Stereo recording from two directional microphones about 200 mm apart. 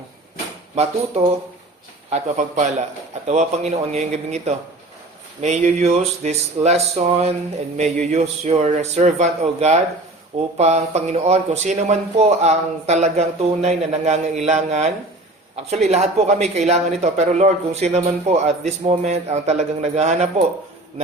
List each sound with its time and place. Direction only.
0.8 s speech: 30° right (ahead or behind)